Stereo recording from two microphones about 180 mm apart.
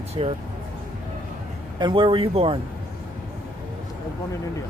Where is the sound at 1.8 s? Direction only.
30° right (ahead or behind).